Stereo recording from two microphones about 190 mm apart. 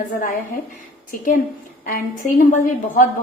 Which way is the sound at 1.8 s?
45° left (ahead or behind).